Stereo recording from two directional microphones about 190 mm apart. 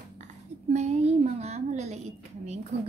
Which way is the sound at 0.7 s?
35° right (ahead or behind).